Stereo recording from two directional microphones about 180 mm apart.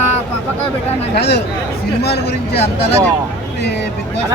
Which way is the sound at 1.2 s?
70° left (ahead or behind).